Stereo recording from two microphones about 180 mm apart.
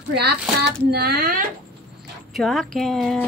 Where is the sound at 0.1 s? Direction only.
65° right (ahead or behind).